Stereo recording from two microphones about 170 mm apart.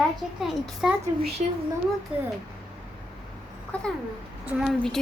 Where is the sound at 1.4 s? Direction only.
40° right (ahead or behind).